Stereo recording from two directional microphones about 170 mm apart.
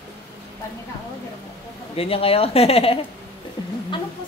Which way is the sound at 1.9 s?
35° left (ahead or behind).